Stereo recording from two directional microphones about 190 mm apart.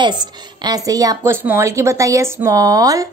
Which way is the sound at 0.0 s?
20° right (ahead or behind).